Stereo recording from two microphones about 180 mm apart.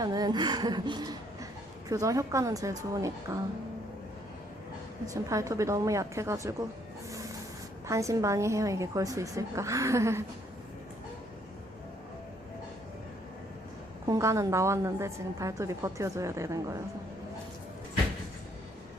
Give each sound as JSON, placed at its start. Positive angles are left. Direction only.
{"t": 0.0, "sound": "a woman's voice", "side_deg": -20}
{"t": 5.0, "sound": "a woman's voice", "side_deg": -15}
{"t": 7.9, "sound": "a woman's voice", "side_deg": -15}
{"t": 14.1, "sound": "a woman's voice", "side_deg": -15}